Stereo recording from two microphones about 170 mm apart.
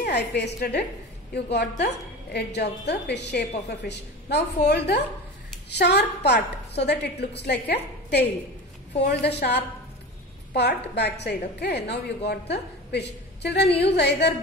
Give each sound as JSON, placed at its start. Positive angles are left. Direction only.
{"t": 0.0, "sound": "a sound", "side_deg": 80}
{"t": 0.4, "sound": "a woman's voice", "side_deg": 80}
{"t": 11.0, "sound": "a woman's voice", "side_deg": 75}